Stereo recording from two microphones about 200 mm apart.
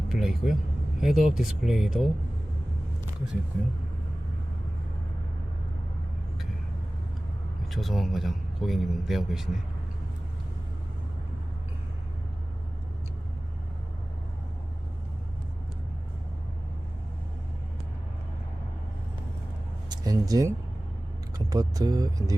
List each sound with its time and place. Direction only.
0.1 s vehicle: centre (ahead or behind)
1.0 s a man's voice: centre (ahead or behind)
7.7 s a man's voice: centre (ahead or behind)
19.9 s speech: 20° right (ahead or behind)